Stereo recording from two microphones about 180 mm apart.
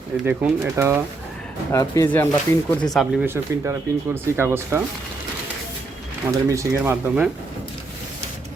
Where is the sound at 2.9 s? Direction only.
10° right (ahead or behind).